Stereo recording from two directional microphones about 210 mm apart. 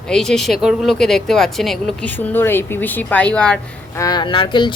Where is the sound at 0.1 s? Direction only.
5° left (ahead or behind).